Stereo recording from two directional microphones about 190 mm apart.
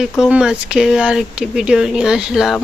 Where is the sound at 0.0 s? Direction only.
5° right (ahead or behind).